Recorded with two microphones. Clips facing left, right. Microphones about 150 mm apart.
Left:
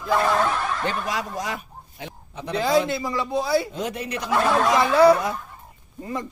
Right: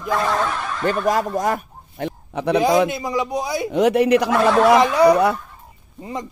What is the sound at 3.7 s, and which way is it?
A man's voice, 70° right (ahead or behind).